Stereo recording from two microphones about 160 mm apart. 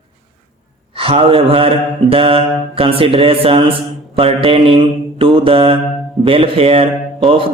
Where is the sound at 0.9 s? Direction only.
35° right (ahead or behind).